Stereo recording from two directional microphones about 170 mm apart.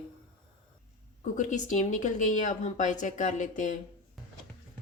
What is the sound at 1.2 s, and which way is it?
Speech, 45° left (ahead or behind).